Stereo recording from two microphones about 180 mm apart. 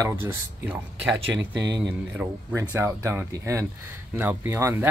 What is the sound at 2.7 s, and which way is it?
Speech, 15° right (ahead or behind).